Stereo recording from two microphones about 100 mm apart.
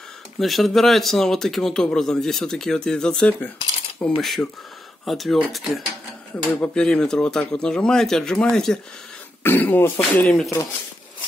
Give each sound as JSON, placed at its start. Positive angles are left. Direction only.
{"t": 0.4, "sound": "speech", "side_deg": 0}
{"t": 6.3, "sound": "speech", "side_deg": 15}
{"t": 9.4, "sound": "speech", "side_deg": 20}
{"t": 10.3, "sound": "speech", "side_deg": 5}